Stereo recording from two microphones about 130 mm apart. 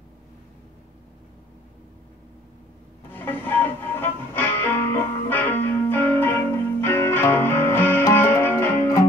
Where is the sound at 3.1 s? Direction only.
15° left (ahead or behind).